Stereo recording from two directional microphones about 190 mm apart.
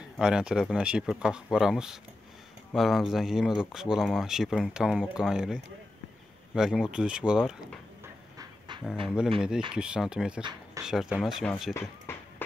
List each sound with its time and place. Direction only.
0.2 s speech: 5° right (ahead or behind)
8.4 s dog: 25° right (ahead or behind)
9.0 s speech: 5° right (ahead or behind)
11.7 s a sound: 15° left (ahead or behind)